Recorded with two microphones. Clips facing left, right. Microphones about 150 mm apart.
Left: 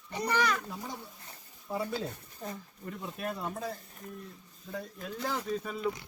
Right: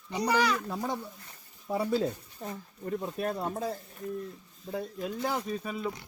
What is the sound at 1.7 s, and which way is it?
Speech, 90° right.